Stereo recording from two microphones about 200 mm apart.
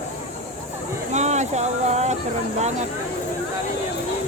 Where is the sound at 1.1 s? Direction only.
35° right (ahead or behind).